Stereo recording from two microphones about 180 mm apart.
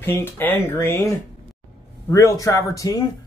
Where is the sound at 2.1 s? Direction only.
15° left (ahead or behind).